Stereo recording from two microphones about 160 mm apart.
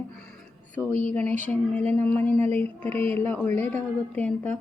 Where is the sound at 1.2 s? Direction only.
50° right (ahead or behind).